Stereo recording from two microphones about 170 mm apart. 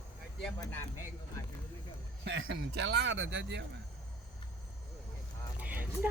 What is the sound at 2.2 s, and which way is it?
A man's voice, 80° right.